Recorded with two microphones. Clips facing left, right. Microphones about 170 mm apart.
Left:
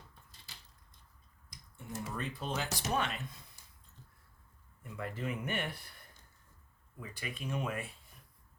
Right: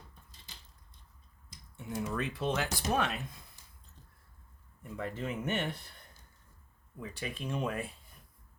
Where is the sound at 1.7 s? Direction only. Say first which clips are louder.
Right 6 dB; 80° right.